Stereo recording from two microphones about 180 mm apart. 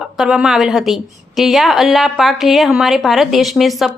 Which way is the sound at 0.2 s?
5° right (ahead or behind).